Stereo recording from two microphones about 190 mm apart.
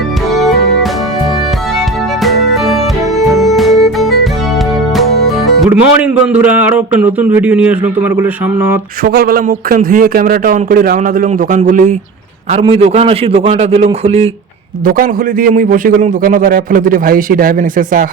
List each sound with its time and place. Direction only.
2.2 s music: centre (ahead or behind)
5.5 s speech: 5° right (ahead or behind)
9.0 s a man's voice: 50° right (ahead or behind)
12.5 s a man's voice: 35° right (ahead or behind)
14.8 s a man's voice: 45° right (ahead or behind)